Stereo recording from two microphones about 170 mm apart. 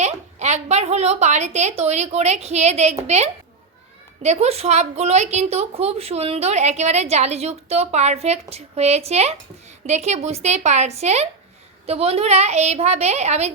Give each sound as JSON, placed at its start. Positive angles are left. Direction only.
{"t": 0.0, "sound": "a woman's voice", "side_deg": -40}